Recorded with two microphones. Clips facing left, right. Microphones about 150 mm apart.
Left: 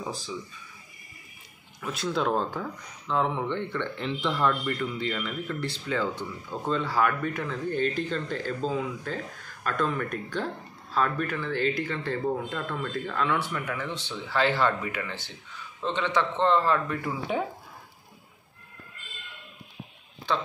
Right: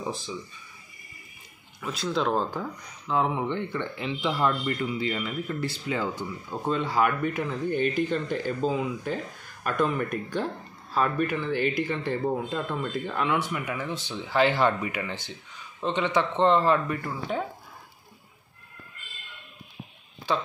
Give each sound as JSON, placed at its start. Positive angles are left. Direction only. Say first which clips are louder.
{"t": 1.8, "sound": "speech", "louder": "right 1 dB", "side_deg": 0}
{"t": 17.0, "sound": "speech", "louder": "left 1 dB", "side_deg": 5}